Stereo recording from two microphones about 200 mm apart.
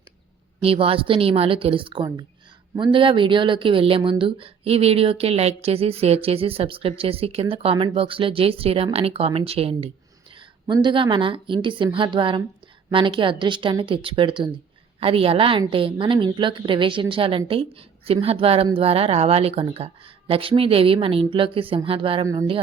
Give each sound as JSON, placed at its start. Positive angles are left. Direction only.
{"t": 0.6, "sound": "a woman's voice", "side_deg": -30}